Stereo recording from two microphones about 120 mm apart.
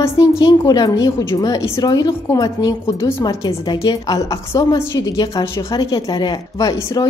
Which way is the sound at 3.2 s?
35° left (ahead or behind).